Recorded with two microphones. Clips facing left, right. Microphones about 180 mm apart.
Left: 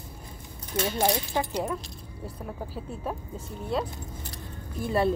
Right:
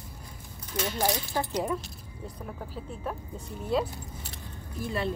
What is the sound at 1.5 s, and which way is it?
Speech, centre (ahead or behind).